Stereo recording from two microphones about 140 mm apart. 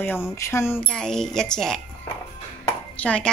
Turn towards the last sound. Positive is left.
turn(degrees=10)  # may be behind; listen again after turning